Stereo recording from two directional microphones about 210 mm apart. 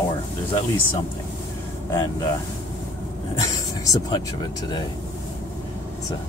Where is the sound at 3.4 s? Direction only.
15° left (ahead or behind).